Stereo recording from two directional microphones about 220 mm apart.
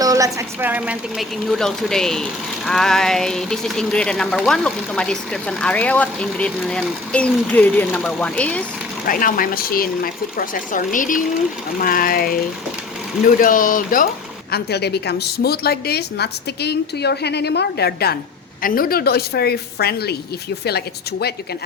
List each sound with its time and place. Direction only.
0.0 s speech: 15° right (ahead or behind); by 8.6 s 5° left (ahead or behind)
9.0 s speech: 40° left (ahead or behind)
14.5 s a woman's voice: 50° left (ahead or behind)